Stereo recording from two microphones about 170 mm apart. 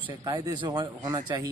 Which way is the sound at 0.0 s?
30° right (ahead or behind).